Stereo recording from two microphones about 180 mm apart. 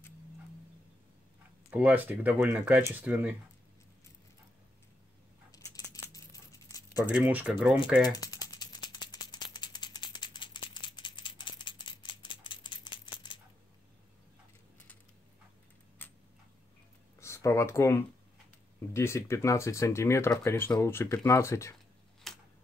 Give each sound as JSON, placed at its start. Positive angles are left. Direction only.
{"t": 1.7, "sound": "speech", "side_deg": -10}
{"t": 5.5, "sound": "a sound", "side_deg": 20}
{"t": 7.1, "sound": "speech", "side_deg": -10}
{"t": 8.1, "sound": "rattle", "side_deg": 20}
{"t": 16.0, "sound": "tick-tock", "side_deg": 10}
{"t": 17.2, "sound": "speech", "side_deg": 15}
{"t": 22.3, "sound": "a sound", "side_deg": 0}